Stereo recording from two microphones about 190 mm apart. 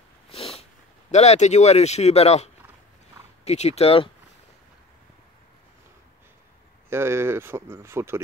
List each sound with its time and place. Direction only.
0.3 s a sound: 30° left (ahead or behind)
1.1 s speech: 35° left (ahead or behind)
6.9 s speech: 15° right (ahead or behind)